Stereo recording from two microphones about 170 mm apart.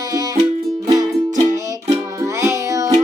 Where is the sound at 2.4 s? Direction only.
20° right (ahead or behind).